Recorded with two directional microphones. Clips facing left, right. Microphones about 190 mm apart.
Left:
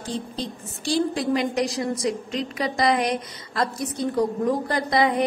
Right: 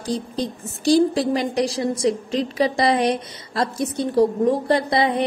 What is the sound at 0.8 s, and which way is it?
A woman's voice, 35° right (ahead or behind).